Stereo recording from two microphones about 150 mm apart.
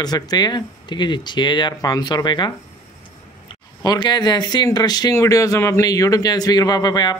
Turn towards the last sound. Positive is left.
turn(degrees=25)  # may be behind; listen again after turning